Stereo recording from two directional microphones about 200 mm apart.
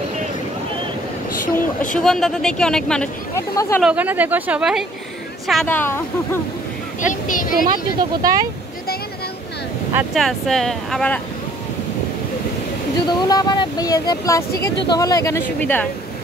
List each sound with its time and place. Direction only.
1.4 s speech: 40° left (ahead or behind)
2.0 s speech: centre (ahead or behind)
3.3 s speech: 15° left (ahead or behind)
3.8 s speech: 5° right (ahead or behind); by 6.4 s 10° left (ahead or behind)
7.0 s a child's voice: 40° left (ahead or behind)
7.7 s speech: 20° right (ahead or behind)
10.1 s speech: centre (ahead or behind)
13.1 s speech: 20° left (ahead or behind)